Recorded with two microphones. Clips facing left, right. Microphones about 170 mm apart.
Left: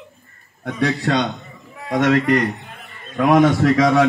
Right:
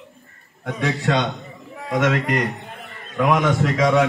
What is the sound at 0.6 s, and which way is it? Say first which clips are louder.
Speech: left 3 dB; 35° left (ahead or behind).